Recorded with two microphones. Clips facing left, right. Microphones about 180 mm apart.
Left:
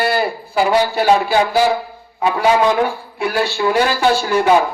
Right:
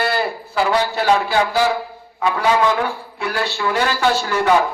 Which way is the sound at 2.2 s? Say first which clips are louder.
Left 3 dB; 20° left (ahead or behind).